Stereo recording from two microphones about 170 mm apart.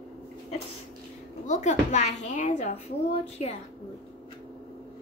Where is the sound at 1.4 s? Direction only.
45° left (ahead or behind).